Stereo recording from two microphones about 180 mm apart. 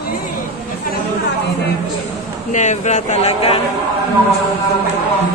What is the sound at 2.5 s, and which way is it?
A man's voice, 40° left (ahead or behind).